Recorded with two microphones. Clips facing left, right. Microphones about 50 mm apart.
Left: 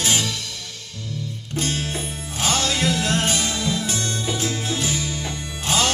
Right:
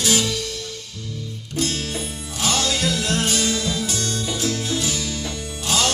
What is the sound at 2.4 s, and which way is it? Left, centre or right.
Music, left.